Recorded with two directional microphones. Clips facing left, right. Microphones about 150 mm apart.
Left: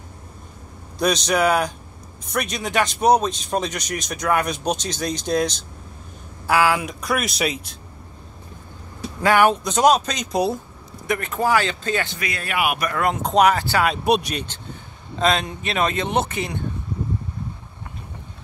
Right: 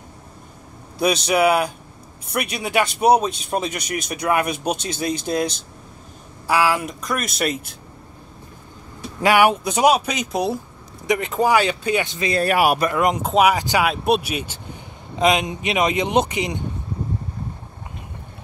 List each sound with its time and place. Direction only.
0.9 s speech: 5° right (ahead or behind)
9.2 s speech: 15° right (ahead or behind)
11.1 s speech: 15° right (ahead or behind)
12.3 s speech: 35° right (ahead or behind)
12.9 s speech: 20° right (ahead or behind)
13.2 s speech: 5° right (ahead or behind)
13.8 s speech: centre (ahead or behind)